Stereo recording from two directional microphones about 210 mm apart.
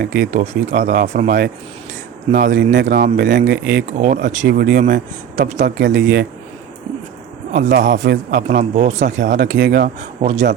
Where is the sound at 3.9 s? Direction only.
40° right (ahead or behind).